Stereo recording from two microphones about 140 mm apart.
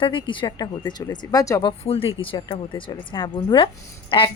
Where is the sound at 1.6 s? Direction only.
40° left (ahead or behind).